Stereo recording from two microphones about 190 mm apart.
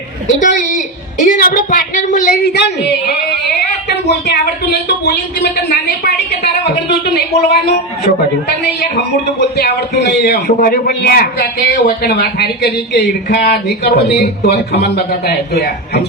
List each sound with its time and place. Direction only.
0.3 s a woman's voice: 40° left (ahead or behind)
2.3 s a man's voice: 60° left (ahead or behind)
4.3 s a man's voice: 60° left (ahead or behind)
9.4 s a man's voice: 60° left (ahead or behind)